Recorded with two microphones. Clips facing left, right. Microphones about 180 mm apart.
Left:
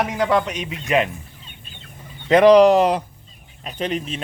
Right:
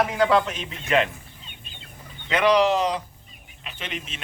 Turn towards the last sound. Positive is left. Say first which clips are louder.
# left 11 dB
turn(degrees=35)  # may be behind; listen again after turning